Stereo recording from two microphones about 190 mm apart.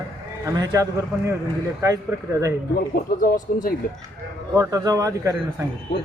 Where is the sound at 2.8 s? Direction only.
50° left (ahead or behind).